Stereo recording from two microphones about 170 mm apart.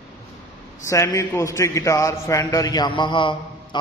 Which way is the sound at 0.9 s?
20° left (ahead or behind).